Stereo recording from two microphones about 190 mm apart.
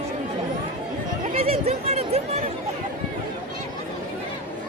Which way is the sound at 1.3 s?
30° right (ahead or behind).